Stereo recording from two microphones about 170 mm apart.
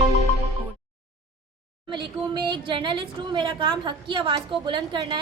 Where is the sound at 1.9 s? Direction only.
25° right (ahead or behind).